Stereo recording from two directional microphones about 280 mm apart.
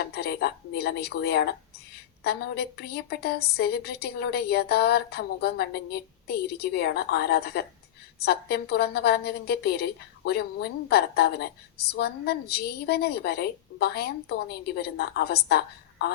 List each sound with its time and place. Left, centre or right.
0.0 s a woman's voice: left